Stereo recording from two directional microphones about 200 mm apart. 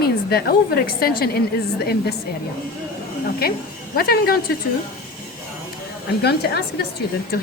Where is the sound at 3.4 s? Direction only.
50° left (ahead or behind).